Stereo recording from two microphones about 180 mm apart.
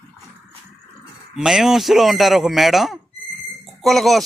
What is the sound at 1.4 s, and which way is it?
Speech, centre (ahead or behind).